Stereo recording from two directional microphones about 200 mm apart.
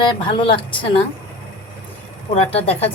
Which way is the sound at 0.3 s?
25° left (ahead or behind).